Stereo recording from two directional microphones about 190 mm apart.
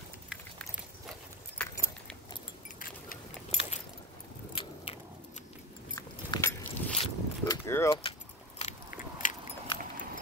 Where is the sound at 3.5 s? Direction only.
35° left (ahead or behind).